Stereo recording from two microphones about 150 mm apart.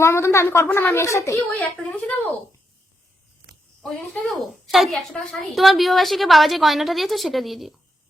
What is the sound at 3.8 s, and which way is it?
A woman's voice, 5° left (ahead or behind).